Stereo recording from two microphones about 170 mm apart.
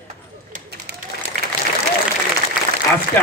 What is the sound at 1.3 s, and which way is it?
Applause, 50° right (ahead or behind).